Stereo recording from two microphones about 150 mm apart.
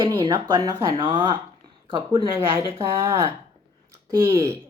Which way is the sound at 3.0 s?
20° right (ahead or behind).